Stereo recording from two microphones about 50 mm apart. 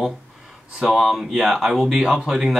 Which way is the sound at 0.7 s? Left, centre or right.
Centre.